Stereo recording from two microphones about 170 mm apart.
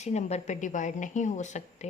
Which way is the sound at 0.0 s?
40° left (ahead or behind).